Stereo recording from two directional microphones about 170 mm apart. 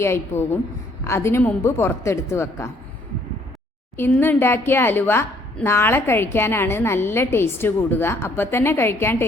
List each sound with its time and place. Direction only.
0.0 s a woman's voice: 15° left (ahead or behind)
4.2 s a woman's voice: 15° left (ahead or behind)